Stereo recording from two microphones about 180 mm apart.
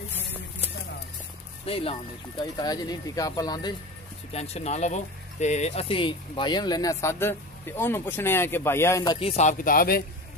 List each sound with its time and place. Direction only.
1.7 s speech: 30° left (ahead or behind)
2.5 s speech: 20° left (ahead or behind)
4.3 s speech: 35° left (ahead or behind)
9.3 s speech: 40° left (ahead or behind)